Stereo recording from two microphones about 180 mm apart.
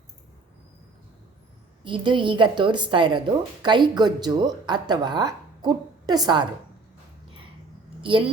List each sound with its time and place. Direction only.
1.8 s speech: 25° right (ahead or behind)